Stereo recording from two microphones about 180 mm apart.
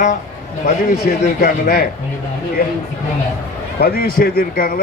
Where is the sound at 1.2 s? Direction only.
50° left (ahead or behind).